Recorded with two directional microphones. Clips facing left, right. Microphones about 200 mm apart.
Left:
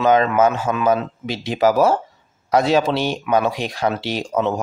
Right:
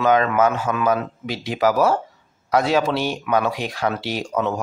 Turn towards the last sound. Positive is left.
turn(degrees=25)  # may be behind; listen again after turning